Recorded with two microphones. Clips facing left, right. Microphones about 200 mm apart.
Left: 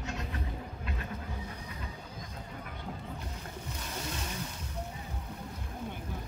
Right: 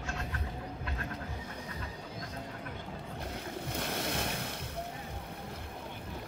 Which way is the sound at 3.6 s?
65° right (ahead or behind).